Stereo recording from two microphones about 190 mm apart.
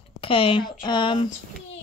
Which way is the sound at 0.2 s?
30° left (ahead or behind).